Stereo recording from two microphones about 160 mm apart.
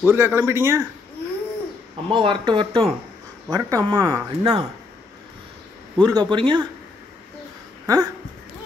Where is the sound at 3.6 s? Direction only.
20° right (ahead or behind).